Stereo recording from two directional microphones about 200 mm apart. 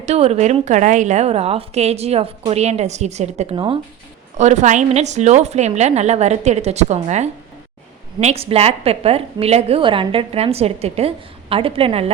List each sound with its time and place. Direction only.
0.0 s a woman's voice: 30° right (ahead or behind)
4.4 s a woman's voice: 35° right (ahead or behind)